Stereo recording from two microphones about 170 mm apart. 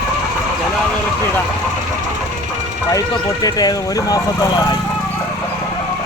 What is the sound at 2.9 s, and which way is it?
Speech, 20° left (ahead or behind).